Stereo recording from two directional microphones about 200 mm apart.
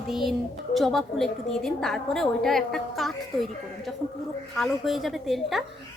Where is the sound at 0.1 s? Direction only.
Centre (ahead or behind).